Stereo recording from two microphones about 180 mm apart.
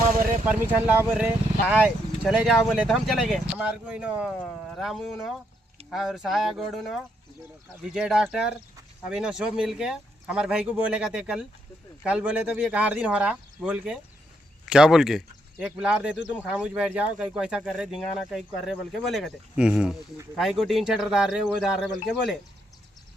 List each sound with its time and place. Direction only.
0.0 s vehicle: 50° right (ahead or behind)
0.4 s speech: 10° right (ahead or behind)
4.4 s speech: 5° left (ahead or behind)